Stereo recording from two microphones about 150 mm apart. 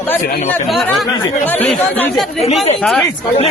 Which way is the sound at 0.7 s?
Centre (ahead or behind).